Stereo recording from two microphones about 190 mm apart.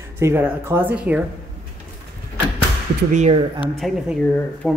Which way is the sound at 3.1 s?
35° right (ahead or behind).